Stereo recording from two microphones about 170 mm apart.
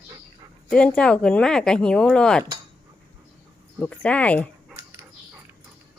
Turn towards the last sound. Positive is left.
turn(degrees=10)  # may be behind; listen again after turning